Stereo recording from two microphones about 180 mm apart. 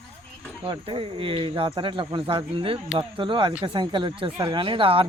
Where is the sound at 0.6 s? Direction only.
30° right (ahead or behind).